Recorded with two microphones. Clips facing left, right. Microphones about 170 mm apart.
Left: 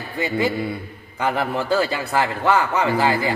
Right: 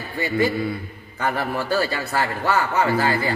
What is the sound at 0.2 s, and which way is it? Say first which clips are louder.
A man's voice: even; 20° left (ahead or behind).